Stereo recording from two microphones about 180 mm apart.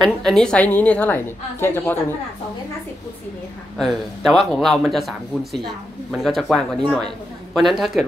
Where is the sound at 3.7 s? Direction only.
Centre (ahead or behind).